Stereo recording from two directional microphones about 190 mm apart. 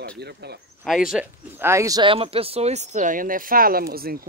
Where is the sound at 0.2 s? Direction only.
60° right (ahead or behind).